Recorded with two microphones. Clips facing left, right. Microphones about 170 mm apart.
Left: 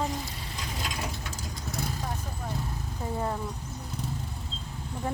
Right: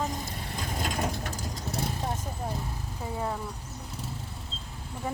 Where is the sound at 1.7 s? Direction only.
30° right (ahead or behind).